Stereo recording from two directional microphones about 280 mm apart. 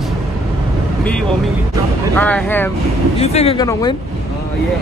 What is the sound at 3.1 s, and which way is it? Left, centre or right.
Speech, left.